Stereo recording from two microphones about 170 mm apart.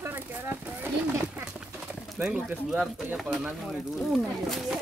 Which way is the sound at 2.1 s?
5° right (ahead or behind).